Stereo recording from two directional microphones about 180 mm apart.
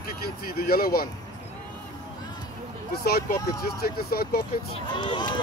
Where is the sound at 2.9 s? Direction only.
60° left (ahead or behind).